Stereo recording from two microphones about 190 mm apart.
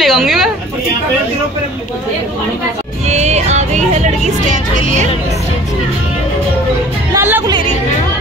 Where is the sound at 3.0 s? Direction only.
35° right (ahead or behind).